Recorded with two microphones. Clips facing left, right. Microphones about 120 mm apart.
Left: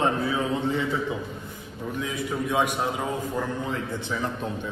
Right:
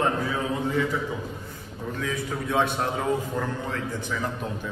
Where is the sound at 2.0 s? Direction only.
15° left (ahead or behind).